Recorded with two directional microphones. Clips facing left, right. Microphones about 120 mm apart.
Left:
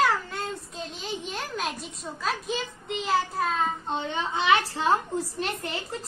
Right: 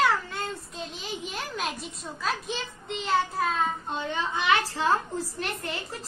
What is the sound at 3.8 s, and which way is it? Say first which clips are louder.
A woman's voice: left 1 dB; 20° left (ahead or behind).